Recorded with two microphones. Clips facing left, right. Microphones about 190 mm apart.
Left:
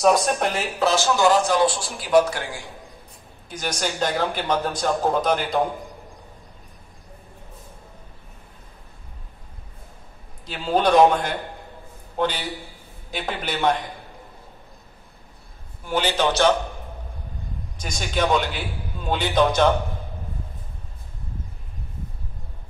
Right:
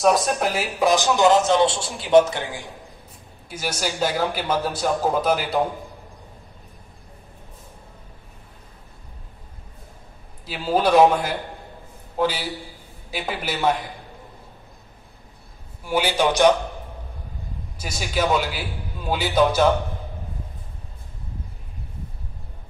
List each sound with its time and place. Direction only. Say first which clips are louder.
0.0 s speech: even; centre (ahead or behind); by 2.6 s 20° right (ahead or behind)
3.4 s speech: even; 5° right (ahead or behind)
10.4 s a man's voice: even; 5° right (ahead or behind)
15.8 s speech: right 1 dB; 10° right (ahead or behind)
17.7 s speech: even; 5° right (ahead or behind)